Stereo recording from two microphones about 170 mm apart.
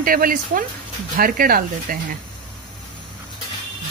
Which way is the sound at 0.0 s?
55° right (ahead or behind).